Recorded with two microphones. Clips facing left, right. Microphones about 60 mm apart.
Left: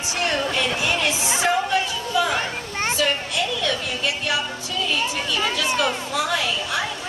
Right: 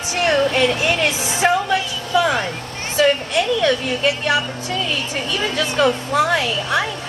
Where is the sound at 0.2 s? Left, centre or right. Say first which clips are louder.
Right 7 dB; right.